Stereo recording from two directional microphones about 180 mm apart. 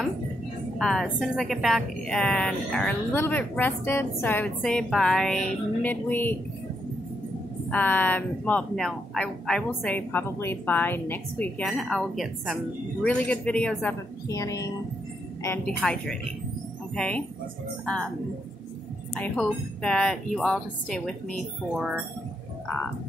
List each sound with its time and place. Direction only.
0.7 s a woman's voice: centre (ahead or behind)
7.7 s speech: 10° left (ahead or behind)
14.3 s a woman's voice: 20° left (ahead or behind)
19.1 s a woman's voice: 5° left (ahead or behind)